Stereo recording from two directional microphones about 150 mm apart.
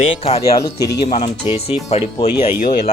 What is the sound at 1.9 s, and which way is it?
Speech, 45° left (ahead or behind).